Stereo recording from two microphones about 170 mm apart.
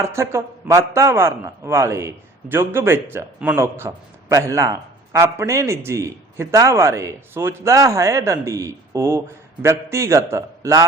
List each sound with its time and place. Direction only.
0.0 s a man's voice: 15° right (ahead or behind)